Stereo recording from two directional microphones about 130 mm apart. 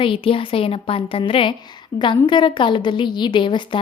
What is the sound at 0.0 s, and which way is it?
A woman's voice, 45° left (ahead or behind).